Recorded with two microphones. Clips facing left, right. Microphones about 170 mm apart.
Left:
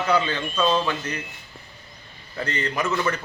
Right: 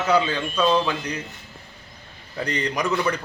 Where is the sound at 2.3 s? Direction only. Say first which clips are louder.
Right 1 dB; 15° right (ahead or behind).